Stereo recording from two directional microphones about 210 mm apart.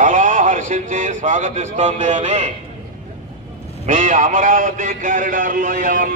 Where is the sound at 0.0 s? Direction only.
40° right (ahead or behind).